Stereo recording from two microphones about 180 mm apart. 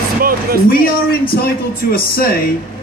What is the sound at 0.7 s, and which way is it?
A man's voice, 55° left (ahead or behind).